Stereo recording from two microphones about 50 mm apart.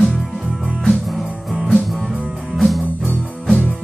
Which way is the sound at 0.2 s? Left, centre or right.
Centre.